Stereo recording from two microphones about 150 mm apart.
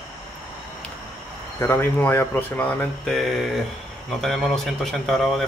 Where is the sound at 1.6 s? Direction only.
15° left (ahead or behind).